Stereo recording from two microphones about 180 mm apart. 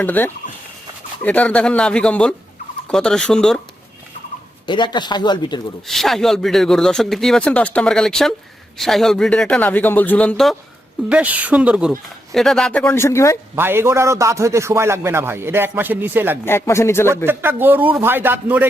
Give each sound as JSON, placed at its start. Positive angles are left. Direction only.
{"t": 0.0, "sound": "speech", "side_deg": 10}
{"t": 4.6, "sound": "speech", "side_deg": 25}
{"t": 5.9, "sound": "speech", "side_deg": 0}
{"t": 11.1, "sound": "speech", "side_deg": -10}
{"t": 13.6, "sound": "a man's voice", "side_deg": -15}
{"t": 16.5, "sound": "speech", "side_deg": 15}
{"t": 17.2, "sound": "a man's voice", "side_deg": -10}